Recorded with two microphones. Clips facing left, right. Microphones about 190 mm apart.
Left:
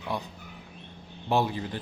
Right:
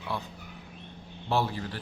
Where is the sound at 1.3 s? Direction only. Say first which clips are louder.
Left 2 dB; 15° left (ahead or behind).